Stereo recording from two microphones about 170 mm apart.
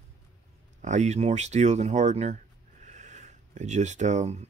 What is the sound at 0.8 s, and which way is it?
Speech, 45° right (ahead or behind).